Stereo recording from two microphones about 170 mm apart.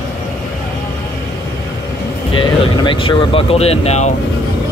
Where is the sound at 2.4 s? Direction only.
30° left (ahead or behind).